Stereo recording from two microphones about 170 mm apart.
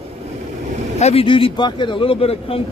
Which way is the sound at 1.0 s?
35° left (ahead or behind).